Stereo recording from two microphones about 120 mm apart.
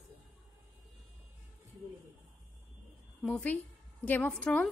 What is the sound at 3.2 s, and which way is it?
A woman's voice, 10° left (ahead or behind).